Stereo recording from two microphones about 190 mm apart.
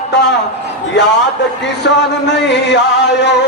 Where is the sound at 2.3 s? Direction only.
65° left (ahead or behind).